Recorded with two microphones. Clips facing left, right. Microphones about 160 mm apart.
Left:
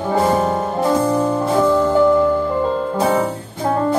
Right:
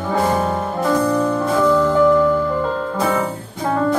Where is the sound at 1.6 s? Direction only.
30° left (ahead or behind).